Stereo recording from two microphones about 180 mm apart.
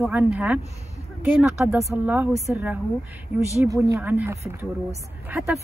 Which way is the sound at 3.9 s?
10° right (ahead or behind).